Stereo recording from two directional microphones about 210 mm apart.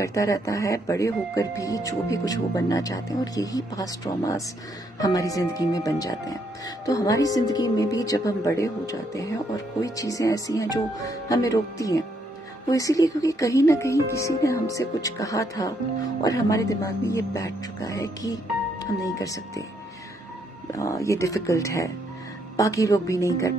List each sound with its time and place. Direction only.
0.0 s speech: 15° left (ahead or behind)
20.7 s speech: 15° left (ahead or behind)